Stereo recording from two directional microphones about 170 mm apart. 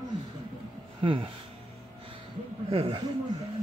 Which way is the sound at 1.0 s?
30° right (ahead or behind).